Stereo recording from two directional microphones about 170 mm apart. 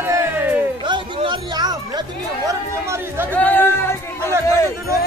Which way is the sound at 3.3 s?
10° left (ahead or behind).